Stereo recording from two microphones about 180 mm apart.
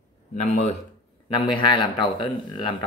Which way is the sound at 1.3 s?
25° left (ahead or behind).